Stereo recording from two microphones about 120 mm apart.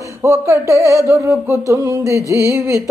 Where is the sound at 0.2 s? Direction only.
25° right (ahead or behind).